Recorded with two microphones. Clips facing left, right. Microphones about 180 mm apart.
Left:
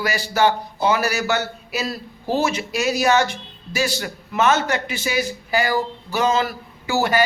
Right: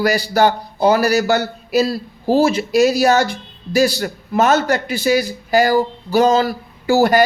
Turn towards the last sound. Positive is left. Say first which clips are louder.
# right 7 dB
turn(degrees=-40)  # may be behind; listen again after turning